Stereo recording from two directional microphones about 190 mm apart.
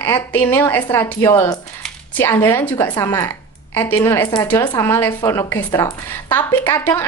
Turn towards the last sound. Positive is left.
turn(degrees=10)  # may be behind; listen again after turning